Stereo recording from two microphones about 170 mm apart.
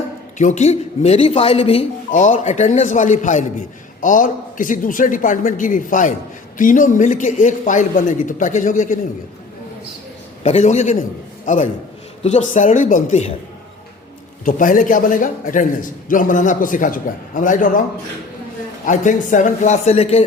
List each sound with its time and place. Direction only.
0.3 s speech: 45° left (ahead or behind)
2.0 s a man's voice: 50° left (ahead or behind)
10.4 s a man's voice: 40° left (ahead or behind)
14.4 s a man's voice: 50° left (ahead or behind)
18.9 s a man's voice: 50° left (ahead or behind)